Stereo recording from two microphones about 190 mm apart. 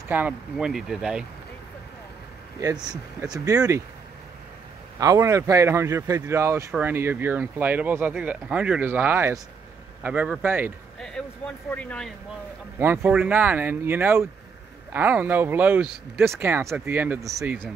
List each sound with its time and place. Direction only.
0.1 s speech: 5° right (ahead or behind)
2.6 s speech: 20° right (ahead or behind)
5.0 s speech: 15° right (ahead or behind)
11.0 s speech: 5° left (ahead or behind)
12.7 s speech: 10° right (ahead or behind)